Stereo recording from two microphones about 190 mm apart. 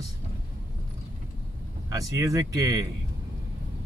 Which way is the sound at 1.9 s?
15° right (ahead or behind).